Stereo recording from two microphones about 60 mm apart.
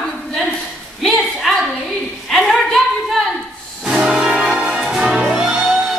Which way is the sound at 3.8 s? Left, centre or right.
Centre.